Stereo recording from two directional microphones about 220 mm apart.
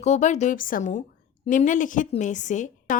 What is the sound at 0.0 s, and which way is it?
A woman's voice, 30° left (ahead or behind).